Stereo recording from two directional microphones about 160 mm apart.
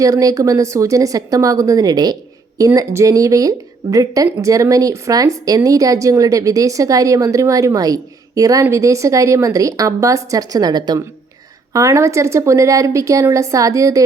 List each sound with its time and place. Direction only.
0.0 s speech: 20° right (ahead or behind)